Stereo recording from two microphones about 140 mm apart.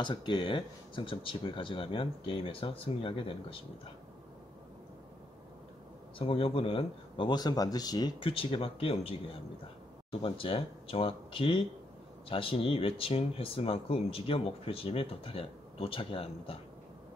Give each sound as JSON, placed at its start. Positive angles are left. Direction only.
{"t": 0.0, "sound": "speech", "side_deg": 35}
{"t": 6.1, "sound": "speech", "side_deg": 40}
{"t": 8.2, "sound": "speech", "side_deg": 40}